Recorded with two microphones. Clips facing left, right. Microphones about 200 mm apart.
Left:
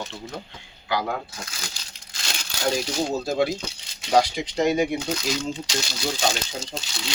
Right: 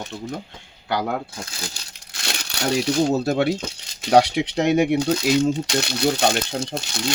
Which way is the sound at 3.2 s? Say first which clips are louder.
Right 3 dB; 65° right (ahead or behind).